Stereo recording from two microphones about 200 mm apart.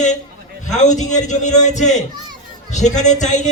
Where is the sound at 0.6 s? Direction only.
35° left (ahead or behind).